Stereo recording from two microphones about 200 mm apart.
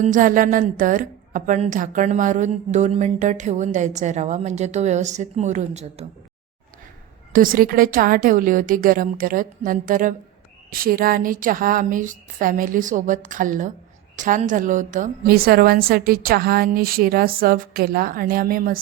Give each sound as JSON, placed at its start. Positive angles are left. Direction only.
{"t": 0.0, "sound": "a woman's voice", "side_deg": -40}
{"t": 7.3, "sound": "a woman's voice", "side_deg": -45}